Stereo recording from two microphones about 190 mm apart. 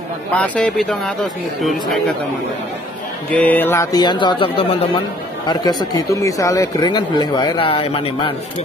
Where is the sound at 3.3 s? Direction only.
10° left (ahead or behind); by 8.3 s 30° left (ahead or behind).